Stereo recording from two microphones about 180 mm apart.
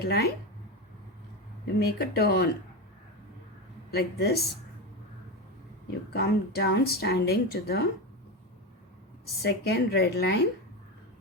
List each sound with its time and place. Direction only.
0.0 s speech: 60° left (ahead or behind)
1.6 s speech: 60° left (ahead or behind)
3.9 s speech: 60° left (ahead or behind)
6.1 s speech: 60° left (ahead or behind)
9.4 s speech: 65° left (ahead or behind)